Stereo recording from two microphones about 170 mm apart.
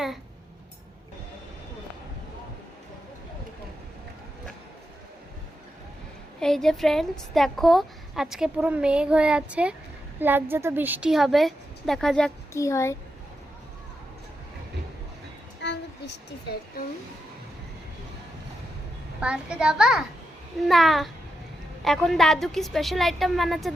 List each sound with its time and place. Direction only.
6.4 s a woman's voice: 5° left (ahead or behind)
12.5 s a child's voice: 15° left (ahead or behind)
15.6 s a sound: 90° left
19.2 s a woman's voice: 5° right (ahead or behind)